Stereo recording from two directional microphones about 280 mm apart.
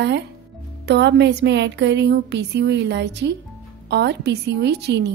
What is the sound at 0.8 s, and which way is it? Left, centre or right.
A woman's voice, right.